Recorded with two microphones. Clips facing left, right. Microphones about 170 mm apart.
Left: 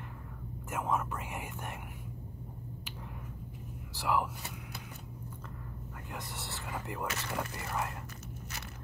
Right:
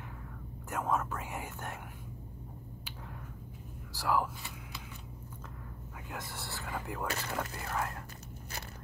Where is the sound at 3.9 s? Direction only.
Centre (ahead or behind).